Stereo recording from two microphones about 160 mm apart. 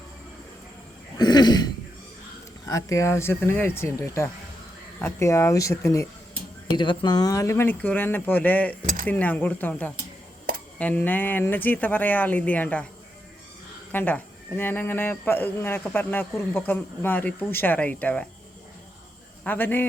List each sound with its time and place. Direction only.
1.2 s throat clearing: 25° left (ahead or behind)
2.6 s speech: 20° left (ahead or behind)
13.9 s speech: 10° left (ahead or behind)
19.5 s speech: 15° left (ahead or behind)